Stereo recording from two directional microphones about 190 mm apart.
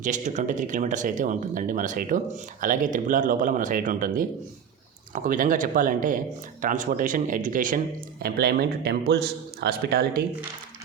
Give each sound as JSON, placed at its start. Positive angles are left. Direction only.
{"t": 0.0, "sound": "a man's voice", "side_deg": -40}